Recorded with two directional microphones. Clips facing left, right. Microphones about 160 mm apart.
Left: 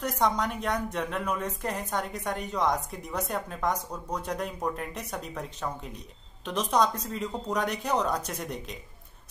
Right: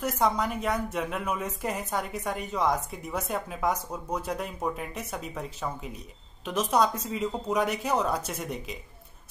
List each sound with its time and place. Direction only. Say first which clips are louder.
0.0 s speech: right 1 dB; 5° right (ahead or behind)